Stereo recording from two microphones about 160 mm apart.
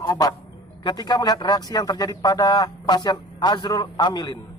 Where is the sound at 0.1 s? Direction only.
25° left (ahead or behind).